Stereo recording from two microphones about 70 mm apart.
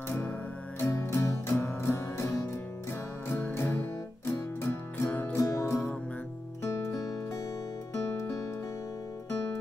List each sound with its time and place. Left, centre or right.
0.7 s music: left